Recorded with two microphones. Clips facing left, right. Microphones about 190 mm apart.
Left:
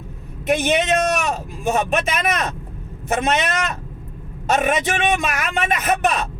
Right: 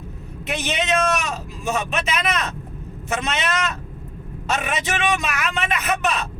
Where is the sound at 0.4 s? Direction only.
50° left (ahead or behind).